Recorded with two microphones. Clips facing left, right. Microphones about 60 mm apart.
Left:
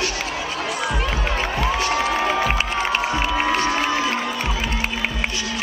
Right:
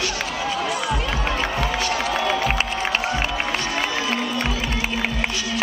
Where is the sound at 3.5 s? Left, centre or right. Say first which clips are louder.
Left 5 dB; left.